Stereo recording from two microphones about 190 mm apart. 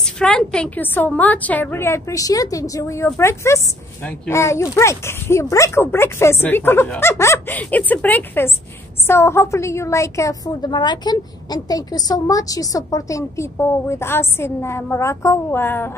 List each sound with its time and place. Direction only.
0.0 s a woman's voice: 5° left (ahead or behind)